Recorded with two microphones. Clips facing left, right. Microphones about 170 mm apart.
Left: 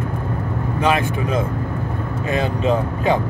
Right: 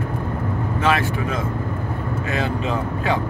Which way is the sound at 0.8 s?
20° left (ahead or behind).